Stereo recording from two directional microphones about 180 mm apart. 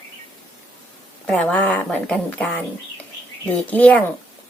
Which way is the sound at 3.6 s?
10° left (ahead or behind).